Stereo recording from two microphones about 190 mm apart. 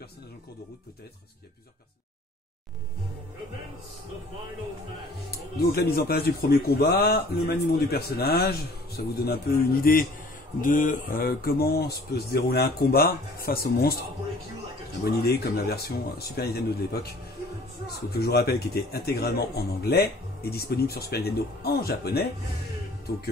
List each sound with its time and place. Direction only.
5.7 s a man's voice: 55° left (ahead or behind)
15.2 s a man's voice: 55° left (ahead or behind)
18.1 s a man's voice: 60° left (ahead or behind)